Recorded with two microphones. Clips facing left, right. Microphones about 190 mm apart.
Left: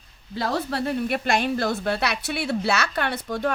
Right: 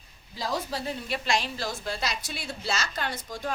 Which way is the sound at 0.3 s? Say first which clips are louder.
Left 6 dB; 65° left (ahead or behind).